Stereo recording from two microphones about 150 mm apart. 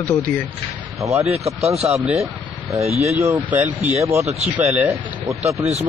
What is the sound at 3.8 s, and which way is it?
Speech, 50° right (ahead or behind).